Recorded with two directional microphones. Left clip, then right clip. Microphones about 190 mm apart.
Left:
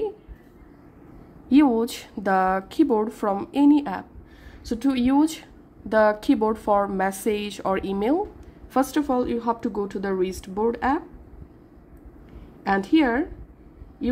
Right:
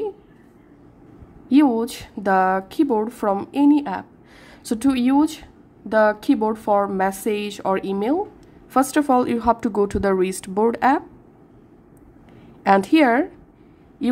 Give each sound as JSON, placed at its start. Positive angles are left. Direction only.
{"t": 1.5, "sound": "a woman's voice", "side_deg": -5}
{"t": 4.6, "sound": "a woman's voice", "side_deg": -20}
{"t": 8.7, "sound": "speech", "side_deg": -20}
{"t": 12.6, "sound": "speech", "side_deg": -20}